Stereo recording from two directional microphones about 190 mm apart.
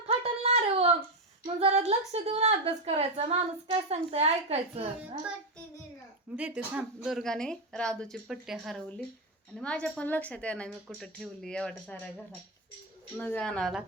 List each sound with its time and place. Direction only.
0.0 s a sound: 35° right (ahead or behind)
1.5 s a woman's voice: 35° right (ahead or behind)
6.3 s speech: 5° right (ahead or behind)
13.1 s speech: 5° left (ahead or behind)